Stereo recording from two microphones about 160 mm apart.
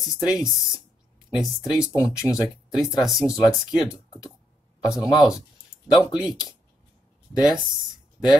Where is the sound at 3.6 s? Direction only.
20° left (ahead or behind).